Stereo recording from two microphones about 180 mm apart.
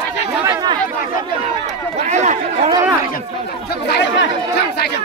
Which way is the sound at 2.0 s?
40° right (ahead or behind).